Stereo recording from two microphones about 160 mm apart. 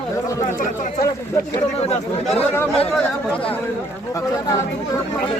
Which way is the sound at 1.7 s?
40° left (ahead or behind).